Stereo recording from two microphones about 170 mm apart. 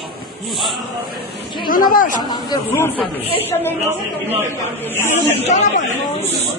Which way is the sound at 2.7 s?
10° left (ahead or behind).